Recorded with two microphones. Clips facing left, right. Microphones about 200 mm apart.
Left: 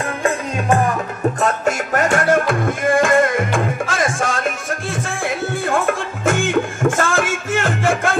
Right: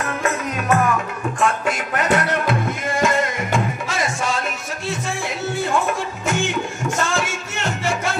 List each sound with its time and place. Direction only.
0.2 s music: 30° left (ahead or behind)
1.4 s music: 45° left (ahead or behind)
5.7 s music: 50° left (ahead or behind)